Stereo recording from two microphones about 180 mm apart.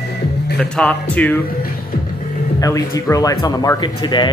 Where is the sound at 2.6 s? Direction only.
15° left (ahead or behind).